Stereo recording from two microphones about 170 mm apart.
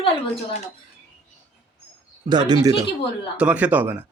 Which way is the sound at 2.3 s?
25° right (ahead or behind).